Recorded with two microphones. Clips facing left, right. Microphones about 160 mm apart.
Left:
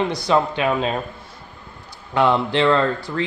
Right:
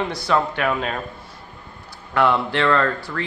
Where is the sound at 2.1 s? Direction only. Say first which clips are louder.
Left 1 dB; 20° left (ahead or behind).